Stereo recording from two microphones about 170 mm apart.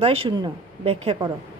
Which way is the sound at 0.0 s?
35° right (ahead or behind).